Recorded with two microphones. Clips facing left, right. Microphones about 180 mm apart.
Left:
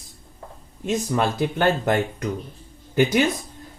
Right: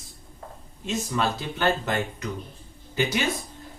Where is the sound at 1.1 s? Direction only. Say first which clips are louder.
Left 5 dB; 50° left (ahead or behind).